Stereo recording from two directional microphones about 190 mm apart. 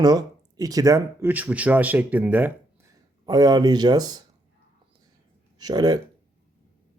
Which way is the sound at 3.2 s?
20° right (ahead or behind).